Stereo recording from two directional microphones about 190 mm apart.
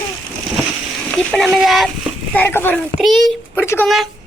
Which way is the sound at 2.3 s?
10° left (ahead or behind).